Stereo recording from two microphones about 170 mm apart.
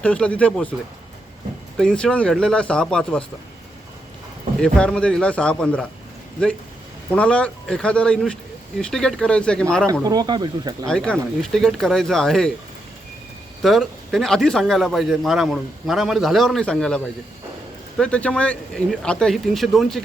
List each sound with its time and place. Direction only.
0.0 s speech: 5° left (ahead or behind)
1.8 s a man's voice: 5° left (ahead or behind)
4.6 s a man's voice: 5° left (ahead or behind)
7.1 s a man's voice: 5° left (ahead or behind)
9.9 s speech: 20° right (ahead or behind)
10.8 s a man's voice: 5° left (ahead or behind)
13.6 s a man's voice: centre (ahead or behind)